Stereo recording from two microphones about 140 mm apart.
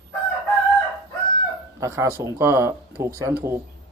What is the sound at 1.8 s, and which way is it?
A man's voice, 20° right (ahead or behind).